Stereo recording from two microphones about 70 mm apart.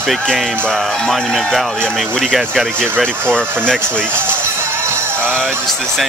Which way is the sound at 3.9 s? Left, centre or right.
Right.